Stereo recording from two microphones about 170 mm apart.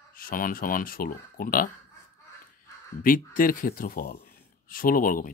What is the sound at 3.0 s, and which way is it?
Speech, 55° left (ahead or behind).